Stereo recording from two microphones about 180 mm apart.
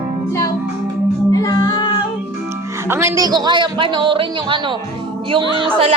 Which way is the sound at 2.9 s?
15° right (ahead or behind).